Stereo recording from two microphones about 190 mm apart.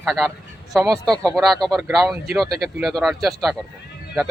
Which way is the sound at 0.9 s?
20° right (ahead or behind).